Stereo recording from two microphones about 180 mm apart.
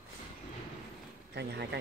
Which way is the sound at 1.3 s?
65° right (ahead or behind).